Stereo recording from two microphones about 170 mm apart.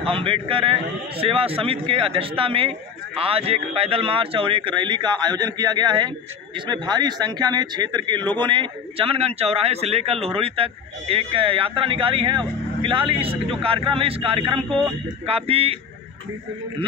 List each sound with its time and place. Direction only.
0.0 s a man's voice: 30° right (ahead or behind)